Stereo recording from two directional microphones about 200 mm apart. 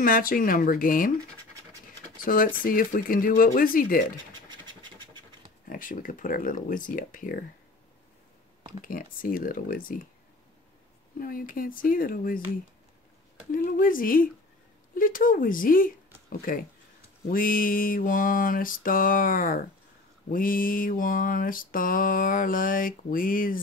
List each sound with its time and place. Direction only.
0.0 s mantra: 45° left (ahead or behind)
2.2 s mantra: 45° left (ahead or behind)
4.5 s scratch: 20° right (ahead or behind)
5.7 s mantra: 40° left (ahead or behind)
8.8 s mantra: 45° left (ahead or behind)
11.1 s mantra: 45° left (ahead or behind)
13.5 s mantra: 45° left (ahead or behind)
16.3 s speech: 45° left (ahead or behind)
17.3 s mantra: 45° left (ahead or behind)